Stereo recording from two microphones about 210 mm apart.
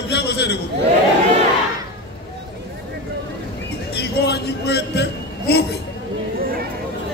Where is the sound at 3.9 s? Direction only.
50° left (ahead or behind).